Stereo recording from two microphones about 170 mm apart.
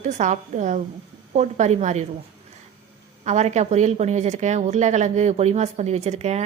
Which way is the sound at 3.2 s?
40° right (ahead or behind).